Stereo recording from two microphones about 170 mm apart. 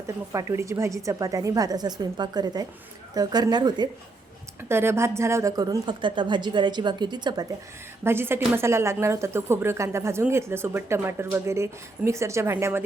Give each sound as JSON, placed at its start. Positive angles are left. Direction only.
{"t": 0.3, "sound": "a woman's voice", "side_deg": -15}
{"t": 4.7, "sound": "a woman's voice", "side_deg": -15}
{"t": 8.0, "sound": "a woman's voice", "side_deg": -15}